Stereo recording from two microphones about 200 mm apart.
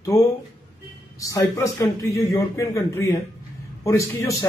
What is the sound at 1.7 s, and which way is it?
Speech, 15° left (ahead or behind).